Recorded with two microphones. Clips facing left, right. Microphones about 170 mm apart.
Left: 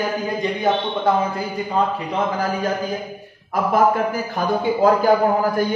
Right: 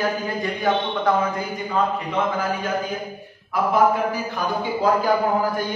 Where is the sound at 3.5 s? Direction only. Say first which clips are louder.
Left 1 dB; 50° left (ahead or behind).